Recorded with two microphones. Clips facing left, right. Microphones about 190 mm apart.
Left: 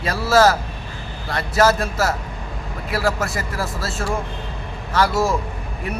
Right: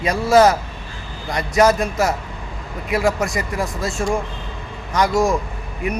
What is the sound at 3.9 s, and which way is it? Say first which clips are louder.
Speech: right 3 dB; 5° left (ahead or behind).